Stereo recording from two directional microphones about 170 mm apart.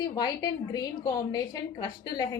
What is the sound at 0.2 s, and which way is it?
A woman's voice, 25° left (ahead or behind).